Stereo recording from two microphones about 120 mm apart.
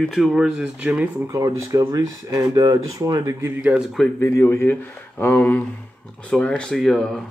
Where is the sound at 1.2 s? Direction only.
25° right (ahead or behind).